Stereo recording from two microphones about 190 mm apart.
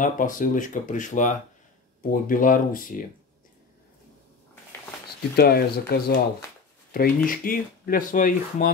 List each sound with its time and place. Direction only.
0.0 s speech: 45° left (ahead or behind)
5.3 s speech: 55° left (ahead or behind)